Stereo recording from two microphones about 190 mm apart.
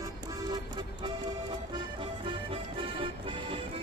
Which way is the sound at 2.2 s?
25° right (ahead or behind).